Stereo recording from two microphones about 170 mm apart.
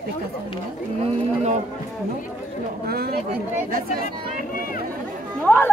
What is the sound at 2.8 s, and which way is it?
Speech, 65° right (ahead or behind).